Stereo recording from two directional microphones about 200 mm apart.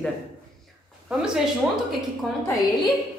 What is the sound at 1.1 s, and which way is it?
Speech, 5° right (ahead or behind).